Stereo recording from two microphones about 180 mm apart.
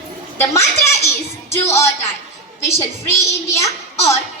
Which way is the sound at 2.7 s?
15° left (ahead or behind).